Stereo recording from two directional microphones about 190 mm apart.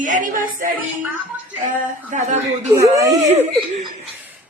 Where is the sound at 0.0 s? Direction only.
40° right (ahead or behind).